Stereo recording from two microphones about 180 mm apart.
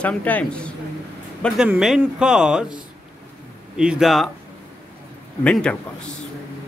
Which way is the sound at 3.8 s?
5° right (ahead or behind).